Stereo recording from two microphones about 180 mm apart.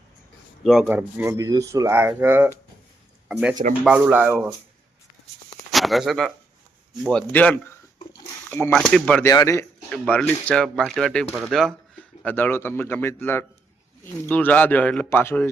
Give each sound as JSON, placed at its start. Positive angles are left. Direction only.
{"t": 0.6, "sound": "speech", "side_deg": 0}
{"t": 3.8, "sound": "speech", "side_deg": -5}
{"t": 5.7, "sound": "speech", "side_deg": 0}
{"t": 9.2, "sound": "speech", "side_deg": 20}
{"t": 9.9, "sound": "speech", "side_deg": 5}